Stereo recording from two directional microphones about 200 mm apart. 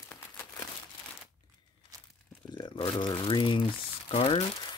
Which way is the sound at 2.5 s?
20° left (ahead or behind).